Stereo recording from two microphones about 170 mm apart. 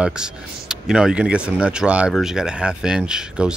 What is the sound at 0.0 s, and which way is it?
Speech, 5° right (ahead or behind).